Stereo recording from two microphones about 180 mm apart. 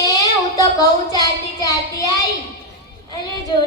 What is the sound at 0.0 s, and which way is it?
Child singing, 20° left (ahead or behind).